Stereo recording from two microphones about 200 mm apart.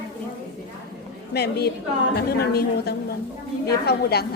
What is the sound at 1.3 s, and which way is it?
Speech, 55° left (ahead or behind).